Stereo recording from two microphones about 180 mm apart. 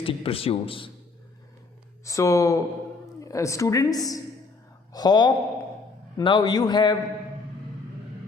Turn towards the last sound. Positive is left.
turn(degrees=25)  # may be behind; listen again after turning